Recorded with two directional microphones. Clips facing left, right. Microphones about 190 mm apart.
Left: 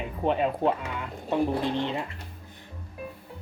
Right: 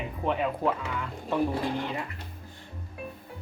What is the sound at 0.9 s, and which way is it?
Speech, 20° left (ahead or behind).